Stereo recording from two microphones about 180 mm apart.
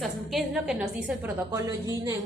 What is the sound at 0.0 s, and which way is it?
A woman's voice, centre (ahead or behind).